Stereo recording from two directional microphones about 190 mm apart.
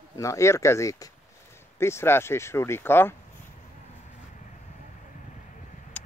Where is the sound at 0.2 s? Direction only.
15° left (ahead or behind).